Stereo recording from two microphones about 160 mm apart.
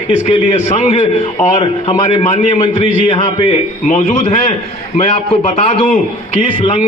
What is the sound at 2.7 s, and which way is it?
Speech, 35° left (ahead or behind).